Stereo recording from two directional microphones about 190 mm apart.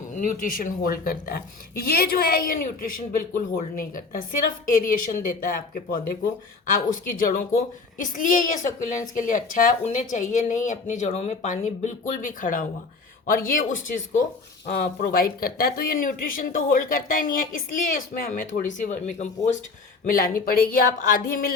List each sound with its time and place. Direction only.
0.1 s a woman's voice: 45° left (ahead or behind)